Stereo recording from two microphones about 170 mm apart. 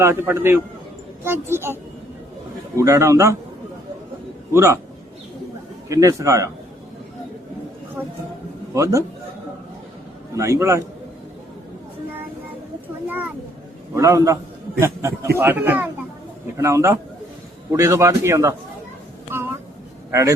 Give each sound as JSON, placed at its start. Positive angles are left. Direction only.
{"t": 0.0, "sound": "a man's voice", "side_deg": -15}
{"t": 2.7, "sound": "a man's voice", "side_deg": -20}
{"t": 4.5, "sound": "a man's voice", "side_deg": -15}
{"t": 5.9, "sound": "a man's voice", "side_deg": -20}
{"t": 8.7, "sound": "a man's voice", "side_deg": -15}
{"t": 10.3, "sound": "a man's voice", "side_deg": -15}
{"t": 13.1, "sound": "a sound", "side_deg": -10}
{"t": 13.9, "sound": "a man's voice", "side_deg": -20}
{"t": 20.1, "sound": "speech", "side_deg": -15}